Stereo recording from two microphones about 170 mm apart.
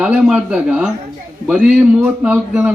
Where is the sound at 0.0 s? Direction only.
5° right (ahead or behind).